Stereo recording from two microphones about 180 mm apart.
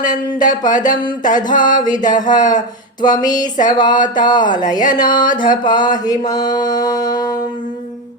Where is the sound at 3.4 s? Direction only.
45° left (ahead or behind).